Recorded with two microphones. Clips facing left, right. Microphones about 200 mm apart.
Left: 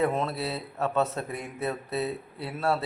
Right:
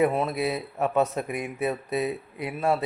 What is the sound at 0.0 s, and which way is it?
Speech, 10° right (ahead or behind).